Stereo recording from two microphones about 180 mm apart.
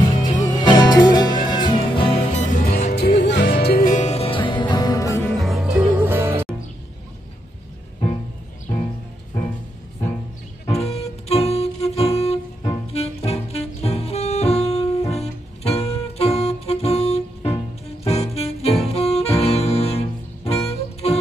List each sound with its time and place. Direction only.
0.2 s music: 25° left (ahead or behind)
2.4 s music: 50° left (ahead or behind)
3.0 s music: 65° left (ahead or behind); by 5.2 s 20° left (ahead or behind)
5.4 s music: centre (ahead or behind)
10.7 s music: 35° left (ahead or behind)